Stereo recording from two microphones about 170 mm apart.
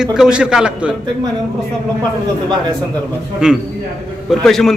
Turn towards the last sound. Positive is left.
turn(degrees=0)  # may be behind; listen again after turning